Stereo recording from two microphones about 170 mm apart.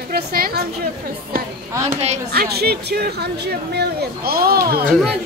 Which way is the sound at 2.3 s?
65° right (ahead or behind).